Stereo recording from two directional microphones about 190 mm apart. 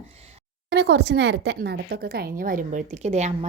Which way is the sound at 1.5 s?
55° right (ahead or behind).